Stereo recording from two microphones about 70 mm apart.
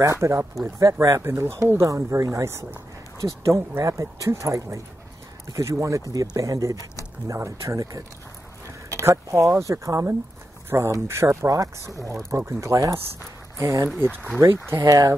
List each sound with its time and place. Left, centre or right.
0.0 s speech: right
1.2 s speech: right
7.3 s speech: right
9.0 s speech: right
10.7 s speech: right
11.4 s speech: right
13.9 s speech: right
14.9 s speech: right